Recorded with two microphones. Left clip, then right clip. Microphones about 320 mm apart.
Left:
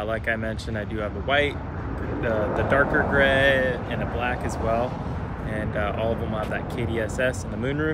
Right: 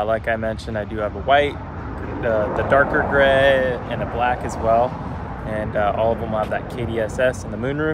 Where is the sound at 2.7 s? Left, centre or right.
Centre.